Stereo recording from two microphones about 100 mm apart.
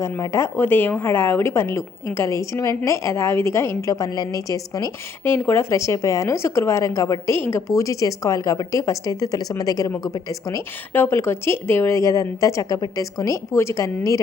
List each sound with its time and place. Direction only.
0.0 s a woman's voice: 30° left (ahead or behind)
3.9 s a woman's voice: 40° left (ahead or behind)
5.2 s a woman's voice: 25° left (ahead or behind)
10.9 s a woman's voice: 20° left (ahead or behind)